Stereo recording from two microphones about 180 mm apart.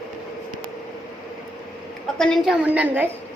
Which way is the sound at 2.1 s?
Centre (ahead or behind).